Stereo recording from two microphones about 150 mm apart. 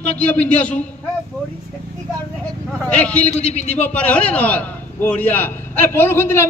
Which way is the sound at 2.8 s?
10° left (ahead or behind).